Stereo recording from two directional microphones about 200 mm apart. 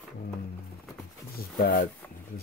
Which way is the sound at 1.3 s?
45° left (ahead or behind).